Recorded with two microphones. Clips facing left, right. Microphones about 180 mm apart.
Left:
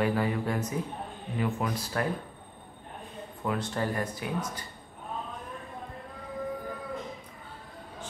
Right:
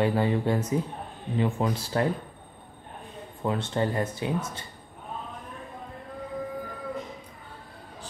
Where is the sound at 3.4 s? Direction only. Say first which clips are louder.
Right 3 dB; 25° right (ahead or behind).